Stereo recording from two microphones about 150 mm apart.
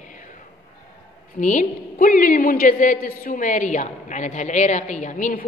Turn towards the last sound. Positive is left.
turn(degrees=60)  # may be behind; listen again after turning